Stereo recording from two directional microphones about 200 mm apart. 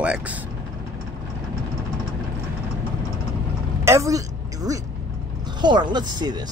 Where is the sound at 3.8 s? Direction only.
15° right (ahead or behind).